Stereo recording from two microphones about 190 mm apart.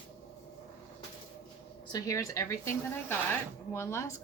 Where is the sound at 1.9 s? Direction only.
20° left (ahead or behind).